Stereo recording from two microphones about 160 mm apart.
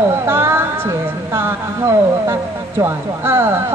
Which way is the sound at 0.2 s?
15° right (ahead or behind).